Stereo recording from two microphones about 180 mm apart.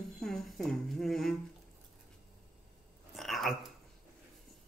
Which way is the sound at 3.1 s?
Centre (ahead or behind).